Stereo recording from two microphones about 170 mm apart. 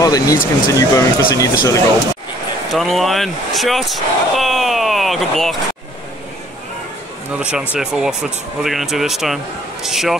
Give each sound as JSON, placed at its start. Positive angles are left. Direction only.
{"t": 0.0, "sound": "speech", "side_deg": 20}
{"t": 2.7, "sound": "speech", "side_deg": 0}
{"t": 7.3, "sound": "speech", "side_deg": -5}